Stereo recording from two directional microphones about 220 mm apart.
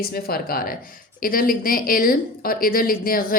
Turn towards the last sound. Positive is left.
turn(degrees=40)  # may be behind; listen again after turning